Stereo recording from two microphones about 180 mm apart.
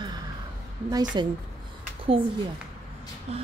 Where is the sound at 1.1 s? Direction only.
25° right (ahead or behind).